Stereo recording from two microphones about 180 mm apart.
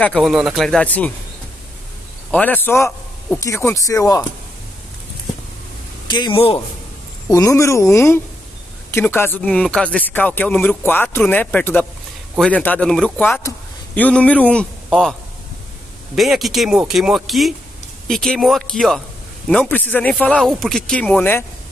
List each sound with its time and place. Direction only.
0.0 s speech: centre (ahead or behind)
2.3 s speech: 10° left (ahead or behind)
6.0 s speech: 25° left (ahead or behind)
7.2 s speech: 15° left (ahead or behind); by 15.1 s centre (ahead or behind)
16.2 s speech: centre (ahead or behind)